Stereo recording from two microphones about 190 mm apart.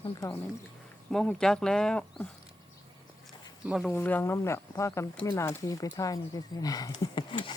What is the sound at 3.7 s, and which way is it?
Speech, centre (ahead or behind).